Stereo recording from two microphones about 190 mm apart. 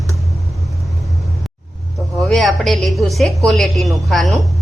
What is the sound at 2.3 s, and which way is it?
A woman's voice, centre (ahead or behind).